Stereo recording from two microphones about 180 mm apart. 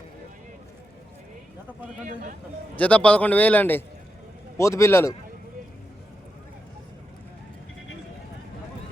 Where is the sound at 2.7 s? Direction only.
10° left (ahead or behind).